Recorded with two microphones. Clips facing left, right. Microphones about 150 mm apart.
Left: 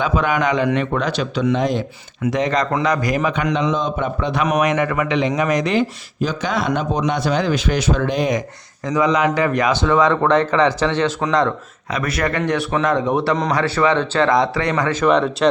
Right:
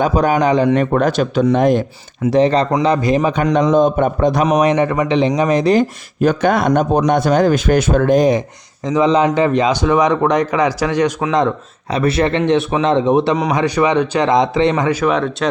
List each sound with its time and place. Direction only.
0.0 s a man's voice: 40° right (ahead or behind)
0.9 s a man's voice: 50° right (ahead or behind)
2.2 s a man's voice: 30° right (ahead or behind)
3.3 s a man's voice: 40° right (ahead or behind)
4.4 s a man's voice: 25° right (ahead or behind)
6.1 s a man's voice: 55° right (ahead or behind)
8.3 s speech: 25° right (ahead or behind)
11.9 s speech: 30° right (ahead or behind)
15.0 s speech: centre (ahead or behind)